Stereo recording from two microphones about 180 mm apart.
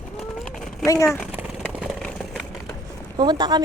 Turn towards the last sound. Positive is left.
turn(degrees=-25)  # may be behind; listen again after turning